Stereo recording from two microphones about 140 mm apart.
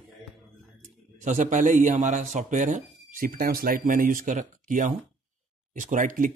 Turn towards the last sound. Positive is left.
turn(degrees=-70)  # may be behind; listen again after turning